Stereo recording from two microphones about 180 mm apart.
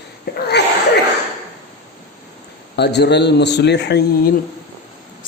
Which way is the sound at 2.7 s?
70° left (ahead or behind).